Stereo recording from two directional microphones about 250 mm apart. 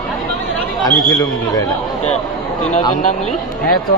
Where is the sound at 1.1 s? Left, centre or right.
Centre.